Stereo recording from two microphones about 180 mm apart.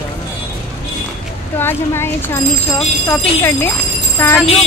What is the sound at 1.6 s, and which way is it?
A woman's voice, 15° left (ahead or behind).